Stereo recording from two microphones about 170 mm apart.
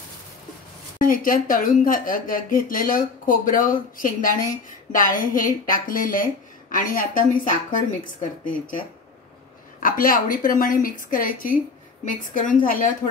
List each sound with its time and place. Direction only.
0.9 s speech: 55° left (ahead or behind)